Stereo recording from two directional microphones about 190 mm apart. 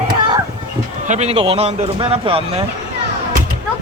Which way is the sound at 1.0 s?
35° right (ahead or behind).